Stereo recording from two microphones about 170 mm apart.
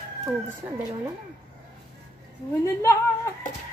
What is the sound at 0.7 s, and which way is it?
Speech, 15° right (ahead or behind).